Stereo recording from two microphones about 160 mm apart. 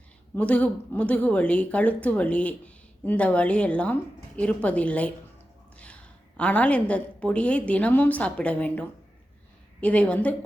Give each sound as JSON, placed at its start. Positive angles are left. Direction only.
{"t": 0.3, "sound": "a woman's voice", "side_deg": 10}